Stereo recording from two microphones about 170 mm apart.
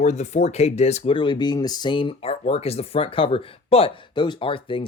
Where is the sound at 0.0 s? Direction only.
40° left (ahead or behind).